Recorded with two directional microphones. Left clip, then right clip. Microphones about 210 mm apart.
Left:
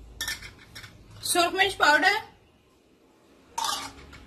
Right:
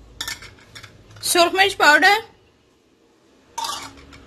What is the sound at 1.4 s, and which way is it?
Speech, 40° right (ahead or behind).